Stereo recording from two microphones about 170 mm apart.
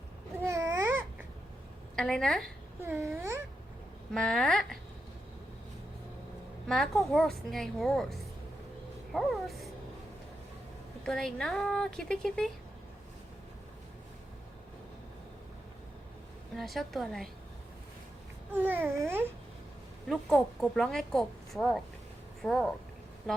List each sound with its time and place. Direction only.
0.4 s babbling: 15° right (ahead or behind)
2.0 s a woman's voice: 5° left (ahead or behind)
2.8 s babbling: 15° right (ahead or behind)
4.1 s a woman's voice: 5° left (ahead or behind)
6.7 s a woman's voice: centre (ahead or behind)
11.0 s a woman's voice: 5° left (ahead or behind)
16.6 s a woman's voice: centre (ahead or behind)
18.5 s babbling: 10° right (ahead or behind)
20.1 s a woman's voice: centre (ahead or behind)